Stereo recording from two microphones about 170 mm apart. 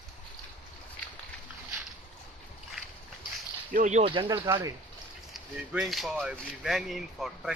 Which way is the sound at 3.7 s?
45° right (ahead or behind).